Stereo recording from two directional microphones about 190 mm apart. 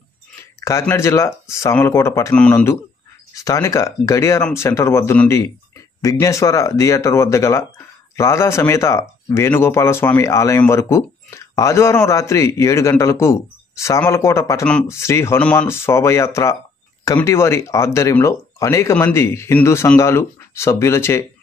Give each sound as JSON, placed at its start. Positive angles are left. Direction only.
{"t": 0.6, "sound": "speech", "side_deg": 15}